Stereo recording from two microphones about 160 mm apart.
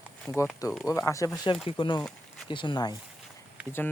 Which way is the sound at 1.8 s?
30° left (ahead or behind).